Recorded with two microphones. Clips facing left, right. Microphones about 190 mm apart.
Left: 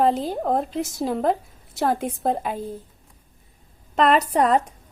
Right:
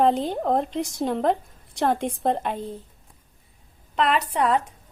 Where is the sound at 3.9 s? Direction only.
45° left (ahead or behind).